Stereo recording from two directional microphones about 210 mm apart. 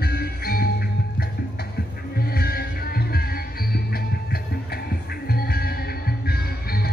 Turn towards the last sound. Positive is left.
turn(degrees=45)  # may be behind; listen again after turning